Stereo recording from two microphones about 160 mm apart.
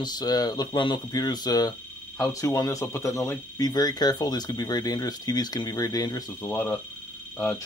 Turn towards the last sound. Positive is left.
turn(degrees=15)  # may be behind; listen again after turning